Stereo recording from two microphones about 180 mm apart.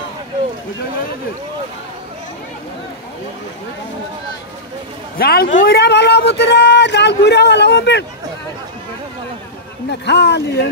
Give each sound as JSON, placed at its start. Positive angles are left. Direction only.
{"t": 5.1, "sound": "speech", "side_deg": 60}
{"t": 9.8, "sound": "speech", "side_deg": 70}